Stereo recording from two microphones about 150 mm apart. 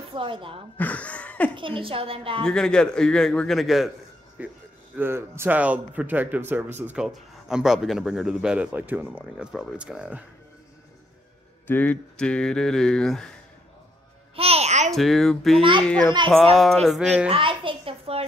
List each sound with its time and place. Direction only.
0.1 s a woman's voice: 35° right (ahead or behind)
0.7 s speech: 10° left (ahead or behind)
1.5 s a woman's voice: 35° right (ahead or behind)
2.4 s a man's voice: 5° left (ahead or behind)
11.6 s speech: 10° left (ahead or behind)
14.3 s music: 40° right (ahead or behind)
14.9 s a child's voice: centre (ahead or behind)
17.3 s a sound: 35° right (ahead or behind)